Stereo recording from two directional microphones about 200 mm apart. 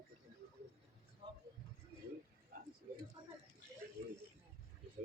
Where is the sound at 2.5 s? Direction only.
45° right (ahead or behind).